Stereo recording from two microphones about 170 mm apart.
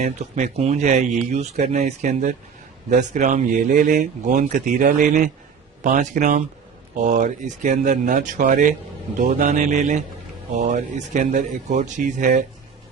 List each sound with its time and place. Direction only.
0.0 s speech: 45° right (ahead or behind)